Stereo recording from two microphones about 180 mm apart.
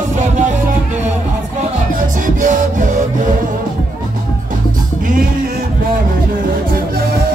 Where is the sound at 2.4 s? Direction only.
45° right (ahead or behind).